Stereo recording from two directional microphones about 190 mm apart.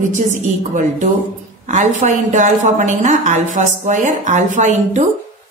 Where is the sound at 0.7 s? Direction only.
40° right (ahead or behind).